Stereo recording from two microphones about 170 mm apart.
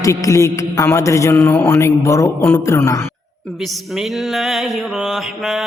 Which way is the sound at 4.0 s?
Centre (ahead or behind).